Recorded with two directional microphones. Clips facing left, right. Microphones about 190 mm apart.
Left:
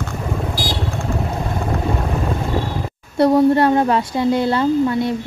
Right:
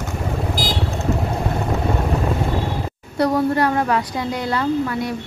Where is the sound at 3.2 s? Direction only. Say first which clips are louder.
Left 5 dB; 25° left (ahead or behind).